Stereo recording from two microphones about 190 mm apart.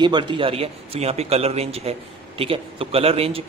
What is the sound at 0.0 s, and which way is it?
A man's voice, 25° right (ahead or behind).